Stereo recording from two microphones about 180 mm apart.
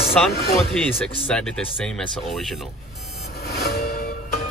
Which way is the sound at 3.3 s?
60° left (ahead or behind).